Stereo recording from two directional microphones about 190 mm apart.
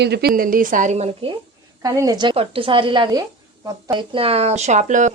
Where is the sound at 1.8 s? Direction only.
20° right (ahead or behind).